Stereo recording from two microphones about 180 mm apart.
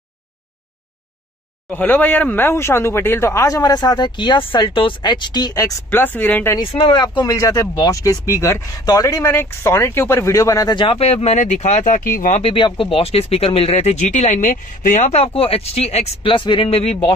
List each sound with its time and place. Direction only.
1.7 s speech: 10° left (ahead or behind)
6.6 s speech: 25° left (ahead or behind); by 12.4 s 50° left (ahead or behind)
12.4 s speech: 30° left (ahead or behind)